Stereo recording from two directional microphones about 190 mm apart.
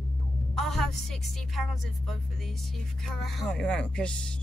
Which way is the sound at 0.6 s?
Centre (ahead or behind).